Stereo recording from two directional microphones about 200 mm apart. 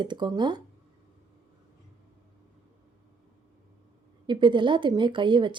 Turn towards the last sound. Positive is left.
turn(degrees=-25)  # may be behind; listen again after turning